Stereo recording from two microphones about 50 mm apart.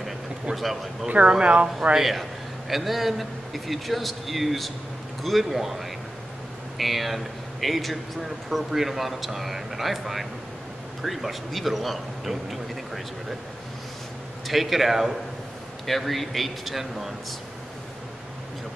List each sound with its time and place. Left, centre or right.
1.0 s speech: right
2.0 s speech: centre
14.5 s speech: centre